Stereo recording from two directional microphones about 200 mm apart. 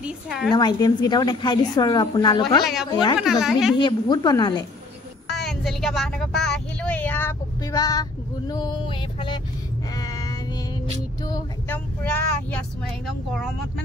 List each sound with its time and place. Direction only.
0.0 s speech: centre (ahead or behind)
0.5 s a woman's voice: 20° left (ahead or behind)
2.6 s speech: centre (ahead or behind)
3.8 s a woman's voice: 20° left (ahead or behind)
5.3 s speech: centre (ahead or behind); by 9.4 s 25° left (ahead or behind)
9.9 s female singing: 20° left (ahead or behind)
11.2 s a woman's voice: 20° left (ahead or behind)
12.0 s speech: 5° left (ahead or behind)